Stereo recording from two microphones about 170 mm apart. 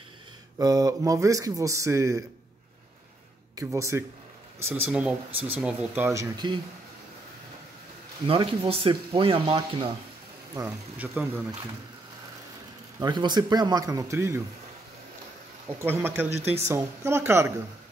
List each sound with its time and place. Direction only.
0.6 s speech: 20° right (ahead or behind)
3.5 s a man's voice: 20° right (ahead or behind)
6.1 s speech: 25° right (ahead or behind)
8.3 s speech: 30° right (ahead or behind)
10.5 s speech: 15° right (ahead or behind)
13.0 s speech: 25° right (ahead or behind)
15.8 s speech: 15° right (ahead or behind)